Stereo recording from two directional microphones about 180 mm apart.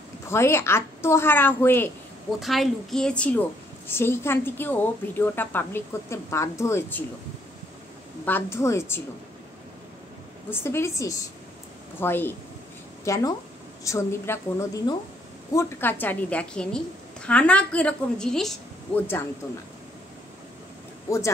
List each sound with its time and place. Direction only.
0.3 s a woman's voice: 15° left (ahead or behind)
2.4 s a woman's voice: centre (ahead or behind)
8.3 s a woman's voice: 10° left (ahead or behind)
10.5 s a woman's voice: 15° left (ahead or behind)